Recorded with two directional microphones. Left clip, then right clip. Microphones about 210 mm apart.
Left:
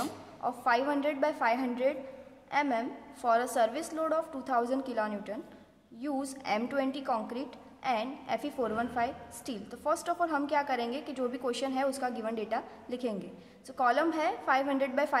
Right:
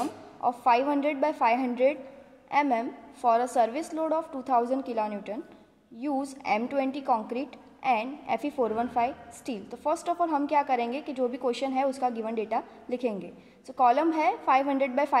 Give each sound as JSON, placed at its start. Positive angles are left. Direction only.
{"t": 0.4, "sound": "a woman's voice", "side_deg": -30}